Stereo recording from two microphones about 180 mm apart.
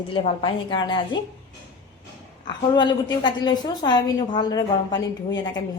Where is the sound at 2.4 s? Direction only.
25° left (ahead or behind).